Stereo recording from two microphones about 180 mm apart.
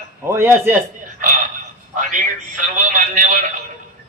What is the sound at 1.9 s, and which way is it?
A man's voice, 45° right (ahead or behind).